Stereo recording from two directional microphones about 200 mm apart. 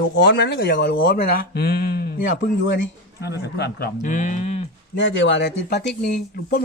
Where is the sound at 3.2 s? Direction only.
55° left (ahead or behind).